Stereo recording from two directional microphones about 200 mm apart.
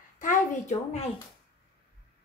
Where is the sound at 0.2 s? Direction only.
40° left (ahead or behind).